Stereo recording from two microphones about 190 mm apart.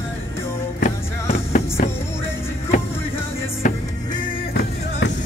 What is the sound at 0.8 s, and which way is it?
Music, 35° left (ahead or behind).